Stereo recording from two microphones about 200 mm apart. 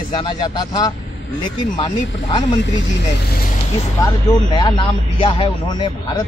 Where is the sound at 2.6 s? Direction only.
65° left (ahead or behind).